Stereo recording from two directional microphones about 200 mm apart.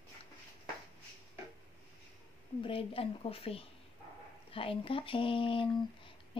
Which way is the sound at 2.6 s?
25° left (ahead or behind).